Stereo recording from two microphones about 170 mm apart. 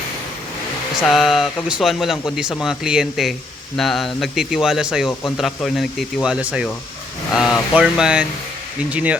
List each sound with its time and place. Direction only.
1.0 s speech: centre (ahead or behind)